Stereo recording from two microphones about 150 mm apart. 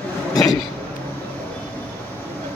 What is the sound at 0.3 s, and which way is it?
Speech, 25° left (ahead or behind).